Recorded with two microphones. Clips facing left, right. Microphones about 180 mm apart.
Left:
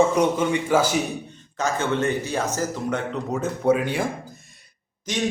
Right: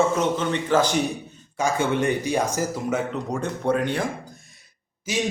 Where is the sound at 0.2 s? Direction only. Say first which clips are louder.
Left 3 dB; 10° left (ahead or behind).